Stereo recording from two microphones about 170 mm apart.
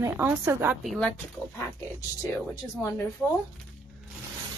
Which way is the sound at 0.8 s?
Centre (ahead or behind).